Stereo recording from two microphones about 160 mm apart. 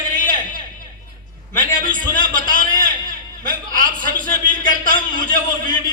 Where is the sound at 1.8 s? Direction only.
60° right (ahead or behind).